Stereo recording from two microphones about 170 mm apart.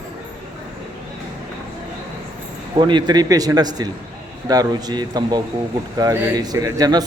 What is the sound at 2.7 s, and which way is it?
A man's voice, 25° right (ahead or behind).